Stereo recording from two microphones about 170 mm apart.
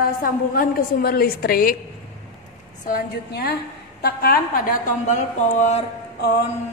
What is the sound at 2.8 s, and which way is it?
A woman's voice, 60° left (ahead or behind).